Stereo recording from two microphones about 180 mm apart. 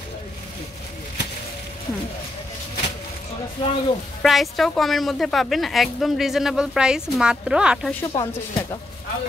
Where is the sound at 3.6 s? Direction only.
25° left (ahead or behind).